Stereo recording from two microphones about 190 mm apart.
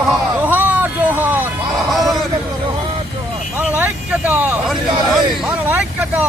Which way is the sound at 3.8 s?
10° right (ahead or behind).